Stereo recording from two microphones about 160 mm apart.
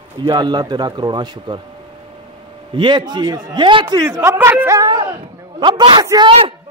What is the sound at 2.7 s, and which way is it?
A man's voice, 30° right (ahead or behind).